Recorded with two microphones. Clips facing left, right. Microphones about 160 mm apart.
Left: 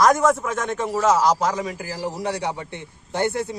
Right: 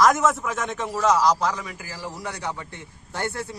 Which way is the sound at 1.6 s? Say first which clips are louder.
Left 8 dB; 35° left (ahead or behind).